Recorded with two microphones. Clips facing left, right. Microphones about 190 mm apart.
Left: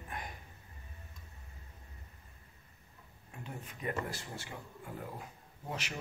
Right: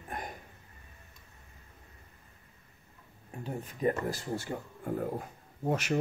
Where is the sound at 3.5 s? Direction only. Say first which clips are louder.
Right 9 dB; 40° right (ahead or behind).